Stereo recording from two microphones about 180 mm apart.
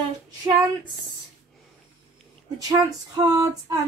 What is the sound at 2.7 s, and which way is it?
Female singing, 20° right (ahead or behind).